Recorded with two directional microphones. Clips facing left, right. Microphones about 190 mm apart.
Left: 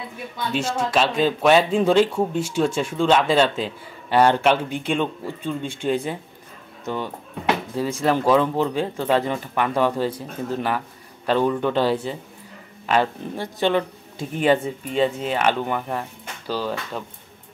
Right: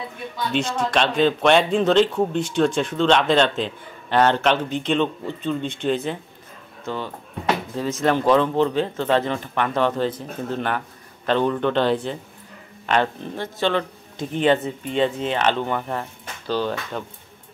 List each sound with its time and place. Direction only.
0.5 s speech: 5° left (ahead or behind)